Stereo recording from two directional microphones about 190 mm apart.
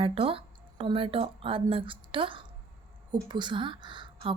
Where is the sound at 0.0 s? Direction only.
30° right (ahead or behind).